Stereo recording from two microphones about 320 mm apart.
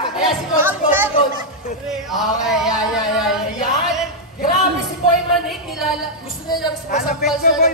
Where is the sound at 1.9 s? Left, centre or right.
Centre.